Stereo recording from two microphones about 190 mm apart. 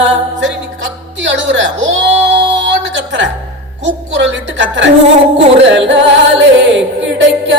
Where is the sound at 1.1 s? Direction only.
75° right (ahead or behind).